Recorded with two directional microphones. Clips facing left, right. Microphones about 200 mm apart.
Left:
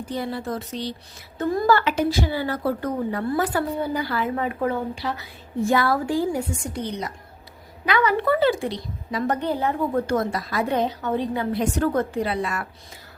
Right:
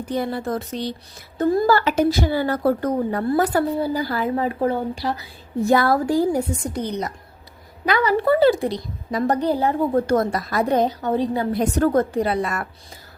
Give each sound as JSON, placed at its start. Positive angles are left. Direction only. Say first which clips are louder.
{"t": 0.1, "sound": "speech", "louder": "right 4 dB", "side_deg": -50}
{"t": 1.4, "sound": "a woman's voice", "louder": "right 3 dB", "side_deg": -35}